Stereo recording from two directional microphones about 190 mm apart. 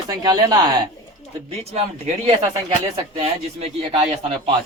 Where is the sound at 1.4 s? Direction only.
30° right (ahead or behind).